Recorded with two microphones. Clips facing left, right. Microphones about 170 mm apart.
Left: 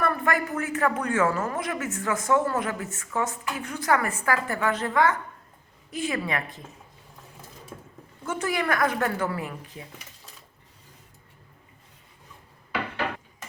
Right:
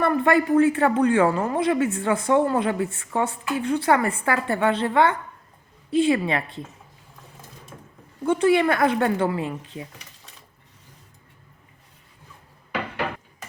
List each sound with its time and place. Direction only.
0.0 s speech: 30° right (ahead or behind)
8.2 s speech: 30° right (ahead or behind)